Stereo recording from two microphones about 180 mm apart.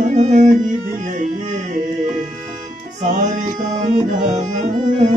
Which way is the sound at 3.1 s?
45° right (ahead or behind).